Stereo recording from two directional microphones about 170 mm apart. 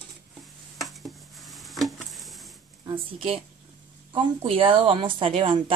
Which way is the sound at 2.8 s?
30° right (ahead or behind).